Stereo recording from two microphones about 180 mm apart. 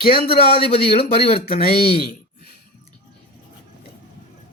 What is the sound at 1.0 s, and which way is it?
Speech, 30° left (ahead or behind).